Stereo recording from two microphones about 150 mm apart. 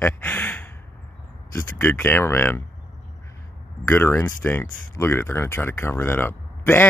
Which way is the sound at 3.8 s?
15° left (ahead or behind).